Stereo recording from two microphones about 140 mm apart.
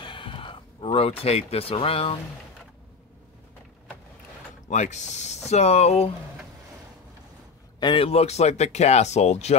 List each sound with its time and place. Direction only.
0.0 s a sound: 35° left (ahead or behind)
0.9 s speech: 45° left (ahead or behind)
4.6 s speech: 60° left (ahead or behind)
7.8 s speech: 40° left (ahead or behind)